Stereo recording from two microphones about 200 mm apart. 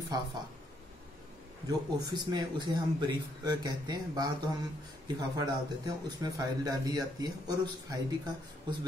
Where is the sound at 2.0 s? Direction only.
20° right (ahead or behind).